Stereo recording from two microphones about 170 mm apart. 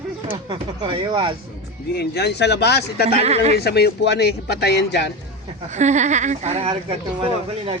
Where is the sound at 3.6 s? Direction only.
70° left (ahead or behind).